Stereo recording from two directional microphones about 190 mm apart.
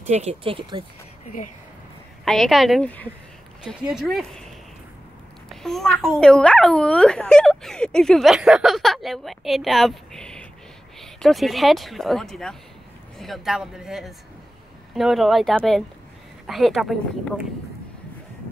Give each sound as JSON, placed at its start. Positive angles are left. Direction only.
{"t": 0.0, "sound": "speech", "side_deg": -35}
{"t": 2.2, "sound": "a child's voice", "side_deg": 0}
{"t": 5.5, "sound": "a child's voice", "side_deg": 0}